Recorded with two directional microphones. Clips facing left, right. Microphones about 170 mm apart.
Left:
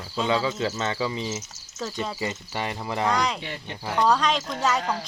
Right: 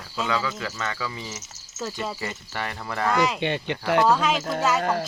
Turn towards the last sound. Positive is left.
turn(degrees=-55)  # may be behind; listen again after turning